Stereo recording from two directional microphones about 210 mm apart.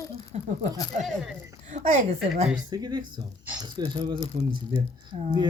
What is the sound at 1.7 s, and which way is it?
Speech, 30° right (ahead or behind).